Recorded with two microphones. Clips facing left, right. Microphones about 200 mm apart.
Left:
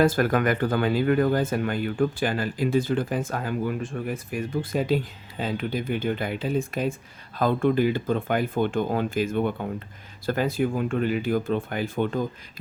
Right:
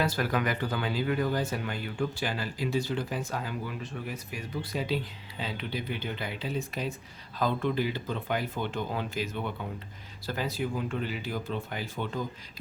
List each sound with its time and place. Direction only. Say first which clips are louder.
0.0 s speech: left 8 dB; 50° left (ahead or behind)